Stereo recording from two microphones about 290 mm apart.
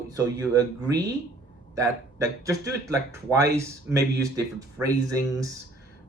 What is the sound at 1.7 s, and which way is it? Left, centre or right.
Speech, centre.